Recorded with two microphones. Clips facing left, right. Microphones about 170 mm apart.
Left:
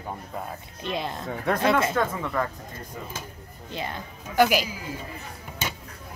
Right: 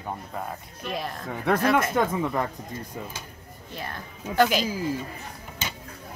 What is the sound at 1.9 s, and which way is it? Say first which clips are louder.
Speech: right 2 dB; 25° right (ahead or behind).